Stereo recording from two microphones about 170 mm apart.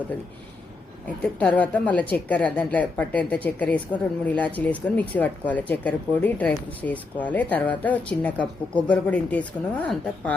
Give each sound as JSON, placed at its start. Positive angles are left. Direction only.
{"t": 1.0, "sound": "a woman's voice", "side_deg": 10}